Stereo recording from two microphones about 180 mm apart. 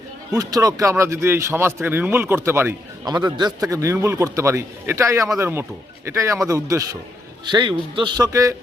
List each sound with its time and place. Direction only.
0.3 s a man's voice: 20° right (ahead or behind)